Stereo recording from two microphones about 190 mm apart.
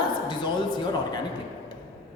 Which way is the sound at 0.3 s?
25° left (ahead or behind).